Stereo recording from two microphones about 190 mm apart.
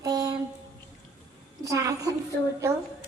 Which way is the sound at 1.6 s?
15° right (ahead or behind).